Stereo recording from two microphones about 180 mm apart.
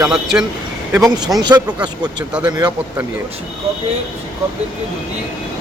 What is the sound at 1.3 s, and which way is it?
Speech, 20° right (ahead or behind).